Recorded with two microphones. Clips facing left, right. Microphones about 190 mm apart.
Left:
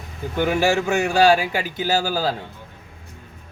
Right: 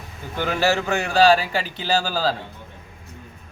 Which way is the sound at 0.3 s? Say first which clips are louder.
Left 2 dB; 10° left (ahead or behind).